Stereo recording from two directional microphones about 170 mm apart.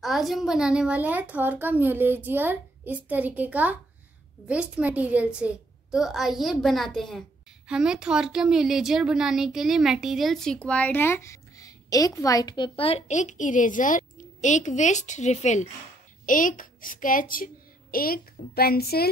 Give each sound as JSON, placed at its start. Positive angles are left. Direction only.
{"t": 0.0, "sound": "a child's voice", "side_deg": 0}